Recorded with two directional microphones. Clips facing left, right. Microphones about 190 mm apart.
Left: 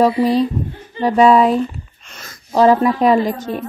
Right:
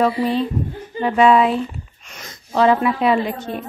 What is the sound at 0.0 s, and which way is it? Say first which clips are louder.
A woman's voice: left 4 dB; 40° left (ahead or behind).